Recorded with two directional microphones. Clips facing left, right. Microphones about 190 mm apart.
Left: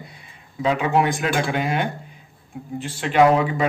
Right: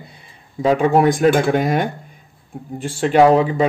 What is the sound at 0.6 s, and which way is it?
Speech, 45° right (ahead or behind).